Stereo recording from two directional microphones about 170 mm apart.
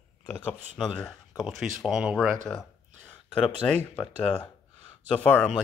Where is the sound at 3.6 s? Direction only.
10° left (ahead or behind).